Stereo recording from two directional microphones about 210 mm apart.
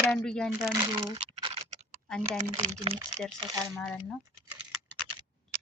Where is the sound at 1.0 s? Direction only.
25° right (ahead or behind).